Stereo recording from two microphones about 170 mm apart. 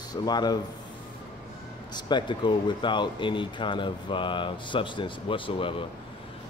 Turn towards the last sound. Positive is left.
turn(degrees=30)  # may be behind; listen again after turning